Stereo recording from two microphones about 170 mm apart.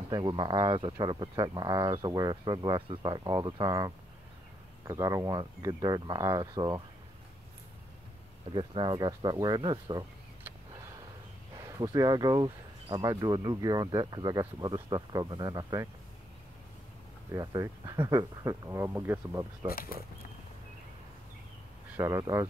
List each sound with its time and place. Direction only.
0.1 s speech: 30° right (ahead or behind)
8.5 s speech: 30° right (ahead or behind)
11.5 s speech: 20° right (ahead or behind)
17.3 s speech: 20° right (ahead or behind)
19.7 s speech: 60° left (ahead or behind)
21.9 s speech: 15° right (ahead or behind)